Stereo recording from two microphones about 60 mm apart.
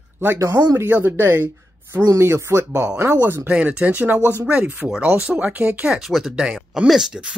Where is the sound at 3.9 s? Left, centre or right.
Right.